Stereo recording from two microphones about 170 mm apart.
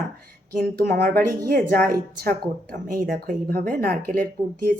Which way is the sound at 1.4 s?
60° right (ahead or behind).